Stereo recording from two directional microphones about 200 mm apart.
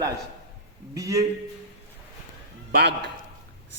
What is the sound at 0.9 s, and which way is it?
Speech, 15° right (ahead or behind).